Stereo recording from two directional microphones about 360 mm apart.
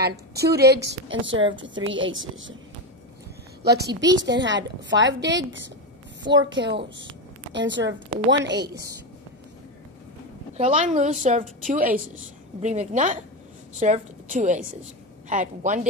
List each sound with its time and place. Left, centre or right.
0.0 s a woman's voice: right
3.6 s a woman's voice: right
6.3 s a woman's voice: centre
6.7 s a woman's voice: right
10.6 s a woman's voice: centre